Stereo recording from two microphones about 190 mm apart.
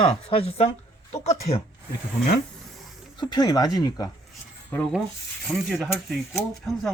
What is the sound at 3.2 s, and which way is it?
Speech, 20° left (ahead or behind).